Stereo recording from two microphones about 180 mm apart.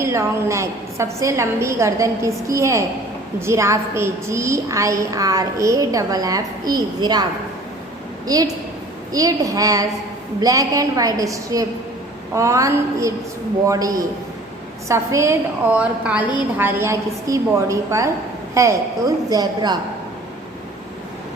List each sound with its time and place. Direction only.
0.0 s a woman's voice: 15° right (ahead or behind)
8.3 s a woman's voice: 20° right (ahead or behind)